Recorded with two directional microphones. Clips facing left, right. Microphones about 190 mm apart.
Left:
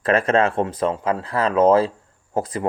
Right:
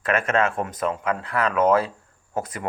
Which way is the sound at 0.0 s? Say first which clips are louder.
Left 4 dB; 35° left (ahead or behind).